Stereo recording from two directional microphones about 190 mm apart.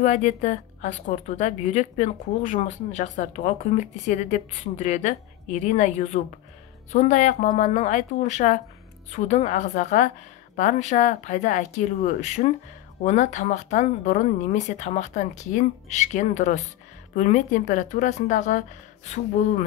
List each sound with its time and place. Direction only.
0.0 s a woman's voice: 35° left (ahead or behind)